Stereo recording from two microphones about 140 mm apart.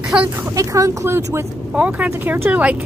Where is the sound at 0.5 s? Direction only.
25° right (ahead or behind).